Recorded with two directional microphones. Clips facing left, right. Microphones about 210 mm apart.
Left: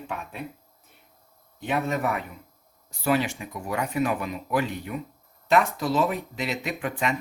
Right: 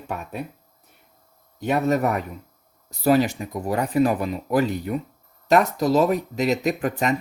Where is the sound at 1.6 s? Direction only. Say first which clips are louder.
Right 6 dB; 40° right (ahead or behind).